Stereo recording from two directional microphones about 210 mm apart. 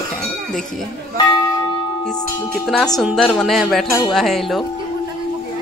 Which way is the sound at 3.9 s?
15° left (ahead or behind).